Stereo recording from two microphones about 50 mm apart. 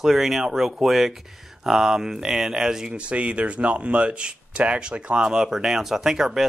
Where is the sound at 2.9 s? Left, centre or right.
Right.